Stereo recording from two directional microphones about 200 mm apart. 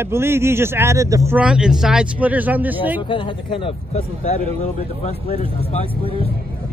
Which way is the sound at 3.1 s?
25° left (ahead or behind).